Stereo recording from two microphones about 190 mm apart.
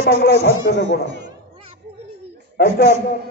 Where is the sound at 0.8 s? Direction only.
65° right (ahead or behind).